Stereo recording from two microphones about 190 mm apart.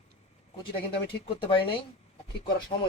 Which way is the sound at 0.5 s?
25° left (ahead or behind).